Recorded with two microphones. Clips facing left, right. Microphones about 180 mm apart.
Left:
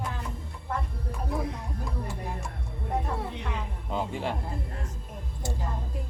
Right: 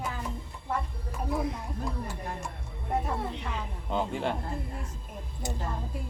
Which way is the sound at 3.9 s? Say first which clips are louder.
Right 1 dB; centre (ahead or behind).